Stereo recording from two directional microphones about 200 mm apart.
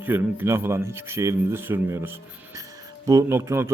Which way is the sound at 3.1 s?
15° right (ahead or behind).